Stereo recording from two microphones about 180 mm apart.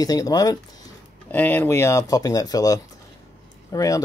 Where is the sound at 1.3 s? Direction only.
10° left (ahead or behind).